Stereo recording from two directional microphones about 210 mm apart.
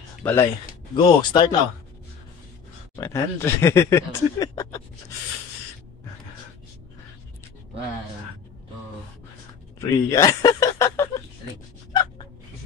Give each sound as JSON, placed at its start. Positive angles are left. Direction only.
{"t": 0.2, "sound": "speech", "side_deg": 10}
{"t": 0.9, "sound": "speech", "side_deg": 20}
{"t": 3.0, "sound": "speech", "side_deg": 15}
{"t": 9.8, "sound": "speech", "side_deg": 15}